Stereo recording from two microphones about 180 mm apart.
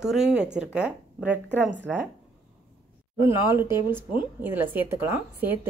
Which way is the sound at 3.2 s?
15° right (ahead or behind).